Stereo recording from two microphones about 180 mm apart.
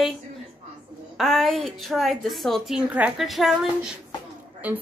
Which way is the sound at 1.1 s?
Centre (ahead or behind).